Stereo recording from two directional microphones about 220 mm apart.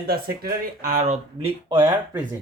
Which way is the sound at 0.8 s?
35° right (ahead or behind).